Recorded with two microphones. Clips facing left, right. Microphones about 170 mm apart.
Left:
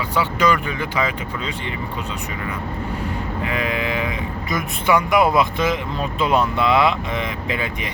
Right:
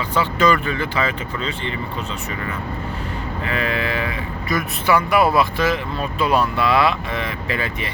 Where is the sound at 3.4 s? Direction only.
15° left (ahead or behind).